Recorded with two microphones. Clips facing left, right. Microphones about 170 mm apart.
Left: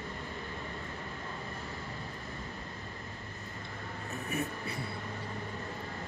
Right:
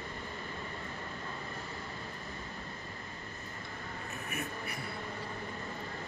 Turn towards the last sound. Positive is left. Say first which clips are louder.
# left 4 dB
turn(degrees=30)  # may be behind; listen again after turning